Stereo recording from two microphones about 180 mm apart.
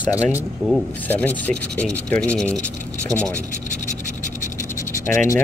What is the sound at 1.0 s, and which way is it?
Speech, 10° left (ahead or behind).